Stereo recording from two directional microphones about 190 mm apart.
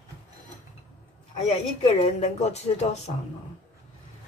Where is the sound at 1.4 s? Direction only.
35° left (ahead or behind).